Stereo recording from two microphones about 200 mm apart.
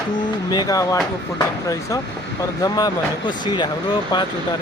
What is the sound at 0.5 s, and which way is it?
Speech, 20° left (ahead or behind).